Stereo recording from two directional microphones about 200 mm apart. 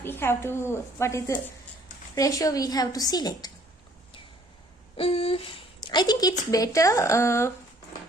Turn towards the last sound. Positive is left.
turn(degrees=15)  # may be behind; listen again after turning